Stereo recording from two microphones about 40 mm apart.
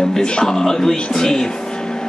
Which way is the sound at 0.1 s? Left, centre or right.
Centre.